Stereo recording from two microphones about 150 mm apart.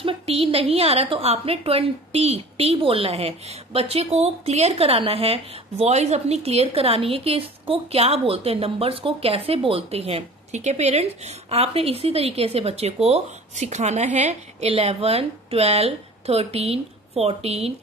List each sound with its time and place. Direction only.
0.0 s a woman's voice: 40° right (ahead or behind)